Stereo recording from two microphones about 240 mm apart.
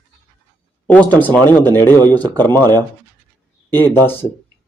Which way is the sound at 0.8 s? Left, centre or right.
Centre.